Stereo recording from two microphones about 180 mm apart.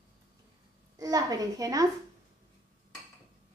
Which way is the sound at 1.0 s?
20° right (ahead or behind).